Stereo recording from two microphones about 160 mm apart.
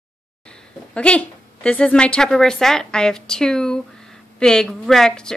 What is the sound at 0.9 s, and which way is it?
A woman's voice, 5° left (ahead or behind).